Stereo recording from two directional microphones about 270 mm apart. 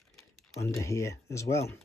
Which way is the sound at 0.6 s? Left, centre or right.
Centre.